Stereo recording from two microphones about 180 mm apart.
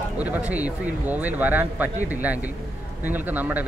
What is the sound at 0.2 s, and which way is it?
Speech, 10° right (ahead or behind).